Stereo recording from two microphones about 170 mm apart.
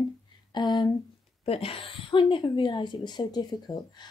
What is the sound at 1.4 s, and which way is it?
A woman's voice, 35° left (ahead or behind).